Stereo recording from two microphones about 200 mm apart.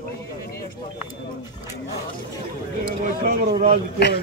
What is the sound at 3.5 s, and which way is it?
Speech, 30° right (ahead or behind).